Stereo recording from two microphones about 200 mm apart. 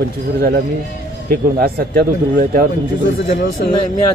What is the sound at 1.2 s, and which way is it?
Speech, 50° right (ahead or behind).